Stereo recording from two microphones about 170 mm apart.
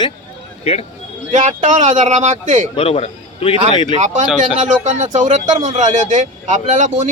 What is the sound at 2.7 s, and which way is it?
A man's voice, 35° left (ahead or behind).